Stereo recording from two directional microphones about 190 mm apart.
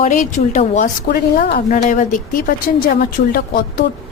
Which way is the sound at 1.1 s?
55° left (ahead or behind).